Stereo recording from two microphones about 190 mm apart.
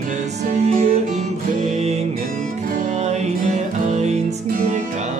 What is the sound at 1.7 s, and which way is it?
Music, 35° right (ahead or behind).